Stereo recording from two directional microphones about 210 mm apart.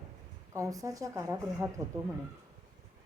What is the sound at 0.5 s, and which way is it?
Speech, 15° right (ahead or behind).